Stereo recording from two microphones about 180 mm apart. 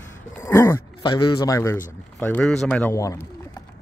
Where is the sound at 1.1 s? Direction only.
25° left (ahead or behind).